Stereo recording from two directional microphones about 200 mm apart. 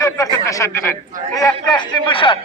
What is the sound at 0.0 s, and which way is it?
A man's voice, 15° left (ahead or behind).